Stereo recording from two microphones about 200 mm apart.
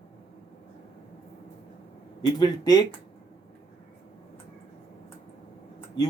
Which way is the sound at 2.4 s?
20° left (ahead or behind).